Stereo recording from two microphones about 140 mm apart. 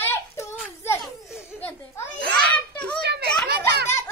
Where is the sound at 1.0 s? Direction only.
5° right (ahead or behind).